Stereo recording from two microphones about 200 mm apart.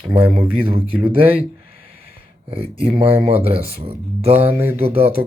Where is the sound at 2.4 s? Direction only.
30° right (ahead or behind).